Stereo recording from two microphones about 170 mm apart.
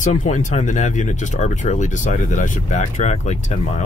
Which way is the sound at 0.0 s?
45° left (ahead or behind).